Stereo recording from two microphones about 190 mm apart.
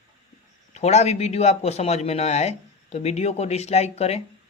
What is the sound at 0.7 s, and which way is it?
Speech, 35° left (ahead or behind).